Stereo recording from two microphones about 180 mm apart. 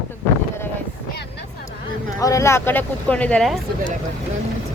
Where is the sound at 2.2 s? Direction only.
15° left (ahead or behind).